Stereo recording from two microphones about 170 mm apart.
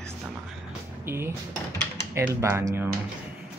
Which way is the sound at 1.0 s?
15° right (ahead or behind).